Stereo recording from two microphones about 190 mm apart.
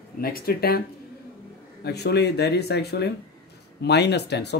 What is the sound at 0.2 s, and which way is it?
Speech, 50° left (ahead or behind).